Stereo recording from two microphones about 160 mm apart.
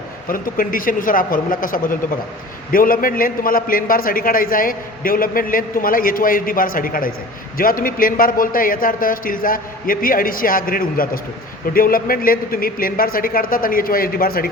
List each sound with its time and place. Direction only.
0.3 s a man's voice: 60° left (ahead or behind)